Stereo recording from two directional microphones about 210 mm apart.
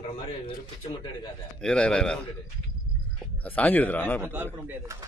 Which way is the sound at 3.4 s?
5° left (ahead or behind).